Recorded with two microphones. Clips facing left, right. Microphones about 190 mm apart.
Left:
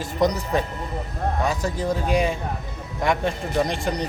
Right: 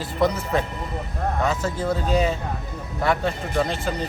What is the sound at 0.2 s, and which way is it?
Speech, 15° left (ahead or behind).